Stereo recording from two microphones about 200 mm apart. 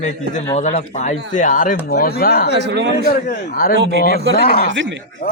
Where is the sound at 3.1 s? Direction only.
45° left (ahead or behind).